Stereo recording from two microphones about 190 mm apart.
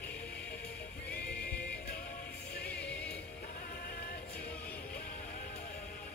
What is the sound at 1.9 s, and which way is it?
Music, 50° left (ahead or behind).